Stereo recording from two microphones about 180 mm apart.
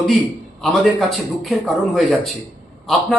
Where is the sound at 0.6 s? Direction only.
Centre (ahead or behind).